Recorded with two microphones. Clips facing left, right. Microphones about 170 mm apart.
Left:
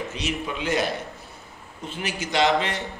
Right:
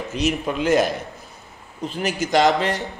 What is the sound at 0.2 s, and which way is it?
Speech, 45° right (ahead or behind).